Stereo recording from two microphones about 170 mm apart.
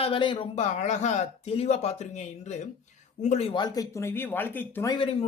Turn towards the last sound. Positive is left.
turn(degrees=35)  # may be behind; listen again after turning